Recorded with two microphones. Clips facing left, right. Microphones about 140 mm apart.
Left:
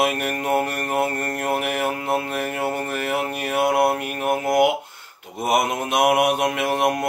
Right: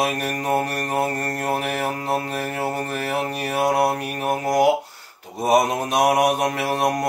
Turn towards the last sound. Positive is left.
turn(degrees=-35)  # may be behind; listen again after turning